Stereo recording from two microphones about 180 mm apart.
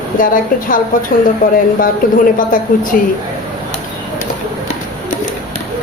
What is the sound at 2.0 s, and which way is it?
Speech, 50° left (ahead or behind).